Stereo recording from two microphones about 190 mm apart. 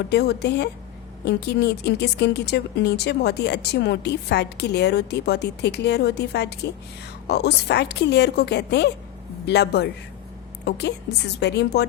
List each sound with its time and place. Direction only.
0.1 s speech: 60° left (ahead or behind)